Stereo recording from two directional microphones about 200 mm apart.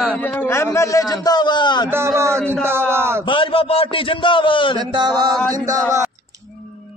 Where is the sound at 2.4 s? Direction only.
5° left (ahead or behind).